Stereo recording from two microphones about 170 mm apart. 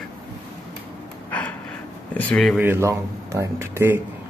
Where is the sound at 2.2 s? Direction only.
5° left (ahead or behind).